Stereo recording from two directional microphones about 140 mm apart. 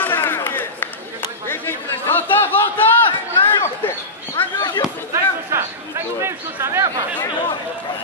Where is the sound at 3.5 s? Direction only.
20° left (ahead or behind).